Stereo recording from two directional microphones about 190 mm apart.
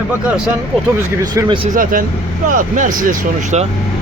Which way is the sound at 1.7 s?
45° right (ahead or behind).